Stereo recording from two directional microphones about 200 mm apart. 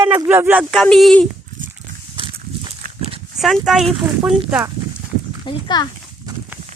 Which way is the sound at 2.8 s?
45° right (ahead or behind).